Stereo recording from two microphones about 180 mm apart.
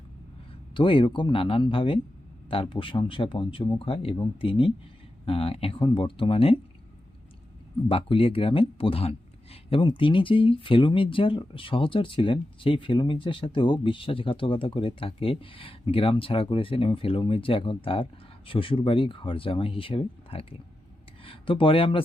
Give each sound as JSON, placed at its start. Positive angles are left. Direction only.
{"t": 0.7, "sound": "speech", "side_deg": 30}
{"t": 7.9, "sound": "speech", "side_deg": 30}